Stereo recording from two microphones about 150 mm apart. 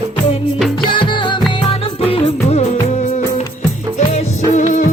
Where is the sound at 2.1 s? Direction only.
45° left (ahead or behind).